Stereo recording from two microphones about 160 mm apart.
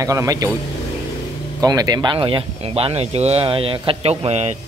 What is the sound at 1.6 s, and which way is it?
Speech, 25° right (ahead or behind).